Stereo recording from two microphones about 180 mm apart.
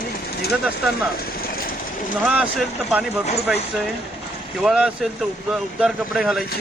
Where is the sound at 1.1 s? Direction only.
55° left (ahead or behind).